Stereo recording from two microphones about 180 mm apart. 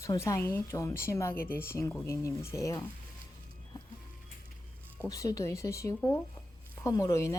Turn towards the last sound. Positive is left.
turn(degrees=15)  # may be behind; listen again after turning